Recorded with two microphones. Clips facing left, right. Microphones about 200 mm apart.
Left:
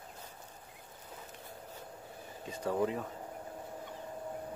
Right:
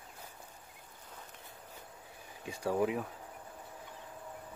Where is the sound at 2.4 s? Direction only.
10° right (ahead or behind).